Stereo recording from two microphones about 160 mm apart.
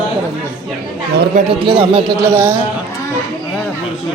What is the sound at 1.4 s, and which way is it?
Speech, 35° right (ahead or behind).